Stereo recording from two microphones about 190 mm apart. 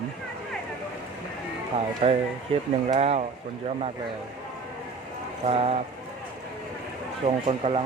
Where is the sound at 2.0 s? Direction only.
35° right (ahead or behind).